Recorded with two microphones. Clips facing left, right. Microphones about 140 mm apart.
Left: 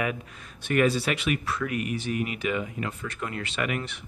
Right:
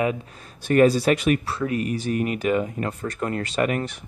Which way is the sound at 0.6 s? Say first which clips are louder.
Right 7 dB; 40° right (ahead or behind).